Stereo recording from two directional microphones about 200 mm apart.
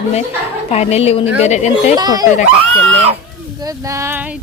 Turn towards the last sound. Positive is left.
turn(degrees=-15)  # may be behind; listen again after turning